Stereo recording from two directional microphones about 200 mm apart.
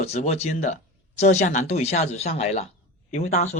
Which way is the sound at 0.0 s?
35° left (ahead or behind).